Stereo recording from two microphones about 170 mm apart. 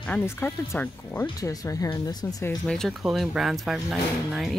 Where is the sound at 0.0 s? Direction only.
10° left (ahead or behind).